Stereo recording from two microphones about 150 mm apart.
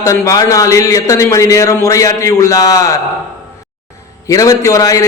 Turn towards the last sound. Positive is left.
turn(degrees=20)  # may be behind; listen again after turning